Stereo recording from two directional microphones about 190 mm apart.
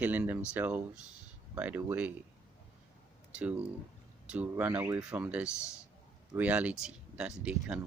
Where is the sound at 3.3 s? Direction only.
5° right (ahead or behind).